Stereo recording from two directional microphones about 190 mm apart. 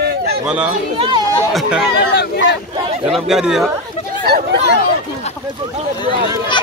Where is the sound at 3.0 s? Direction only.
Centre (ahead or behind).